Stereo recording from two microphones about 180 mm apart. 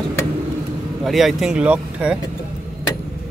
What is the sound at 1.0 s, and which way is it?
Speech, centre (ahead or behind).